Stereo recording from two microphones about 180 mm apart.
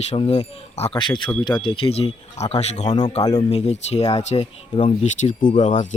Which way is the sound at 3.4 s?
35° left (ahead or behind).